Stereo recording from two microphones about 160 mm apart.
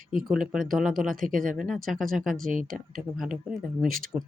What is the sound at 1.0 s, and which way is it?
Speech, 55° right (ahead or behind).